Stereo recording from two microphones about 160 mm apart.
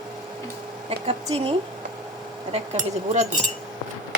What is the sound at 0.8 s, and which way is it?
Speech, 40° right (ahead or behind).